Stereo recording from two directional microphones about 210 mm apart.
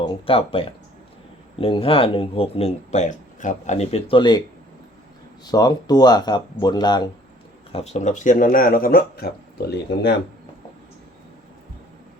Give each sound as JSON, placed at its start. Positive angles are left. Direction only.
{"t": 0.0, "sound": "speech", "side_deg": 25}
{"t": 5.5, "sound": "speech", "side_deg": 20}
{"t": 7.7, "sound": "speech", "side_deg": 30}